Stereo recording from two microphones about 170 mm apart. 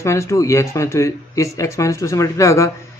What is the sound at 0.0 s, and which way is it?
Speech, 15° left (ahead or behind).